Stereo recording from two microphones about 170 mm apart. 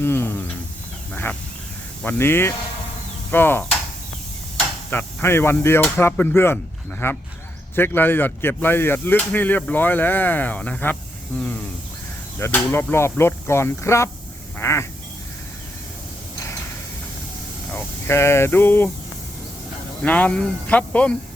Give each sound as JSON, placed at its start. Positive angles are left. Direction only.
{"t": 0.0, "sound": "speech", "side_deg": 15}
{"t": 1.1, "sound": "a sound", "side_deg": 10}
{"t": 2.0, "sound": "speech", "side_deg": 15}
{"t": 4.9, "sound": "speech", "side_deg": 15}
{"t": 11.3, "sound": "a sound", "side_deg": 10}
{"t": 12.4, "sound": "speech", "side_deg": 15}
{"t": 14.6, "sound": "duck", "side_deg": 15}
{"t": 17.7, "sound": "speech", "side_deg": 15}
{"t": 20.0, "sound": "speech", "side_deg": 10}